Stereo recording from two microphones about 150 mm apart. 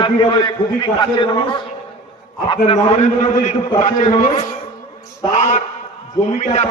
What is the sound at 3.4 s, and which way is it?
A man's voice, 45° left (ahead or behind).